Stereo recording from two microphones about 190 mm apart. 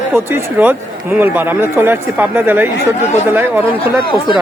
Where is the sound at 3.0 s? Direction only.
35° left (ahead or behind).